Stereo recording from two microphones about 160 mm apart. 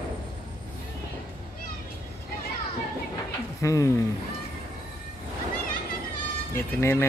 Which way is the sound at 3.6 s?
20° left (ahead or behind).